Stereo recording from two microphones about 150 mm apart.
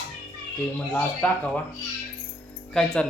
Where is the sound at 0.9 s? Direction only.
10° left (ahead or behind).